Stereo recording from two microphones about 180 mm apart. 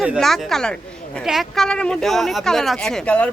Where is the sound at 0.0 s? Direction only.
Centre (ahead or behind).